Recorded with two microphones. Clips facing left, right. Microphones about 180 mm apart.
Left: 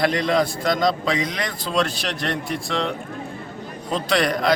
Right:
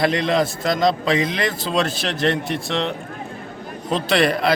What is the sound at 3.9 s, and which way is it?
Speech, 25° right (ahead or behind).